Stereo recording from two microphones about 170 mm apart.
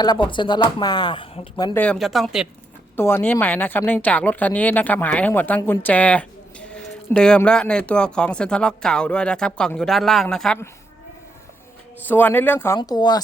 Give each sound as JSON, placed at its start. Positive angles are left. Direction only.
{"t": 0.0, "sound": "speech", "side_deg": 25}
{"t": 1.7, "sound": "speech", "side_deg": 5}
{"t": 2.9, "sound": "a woman's voice", "side_deg": 15}
{"t": 12.0, "sound": "a woman's voice", "side_deg": 10}